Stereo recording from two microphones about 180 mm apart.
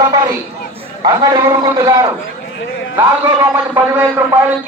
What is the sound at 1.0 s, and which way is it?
A man's voice, 20° right (ahead or behind).